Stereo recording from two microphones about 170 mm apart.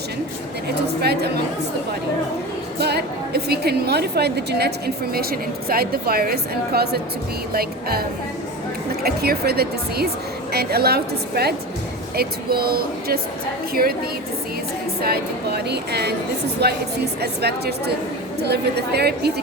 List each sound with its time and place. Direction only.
0.8 s a woman's voice: 70° right (ahead or behind)
2.7 s a woman's voice: 70° right (ahead or behind)
5.1 s a woman's voice: 60° right (ahead or behind)
9.0 s a woman's voice: 65° right (ahead or behind)
15.0 s a woman's voice: 70° right (ahead or behind)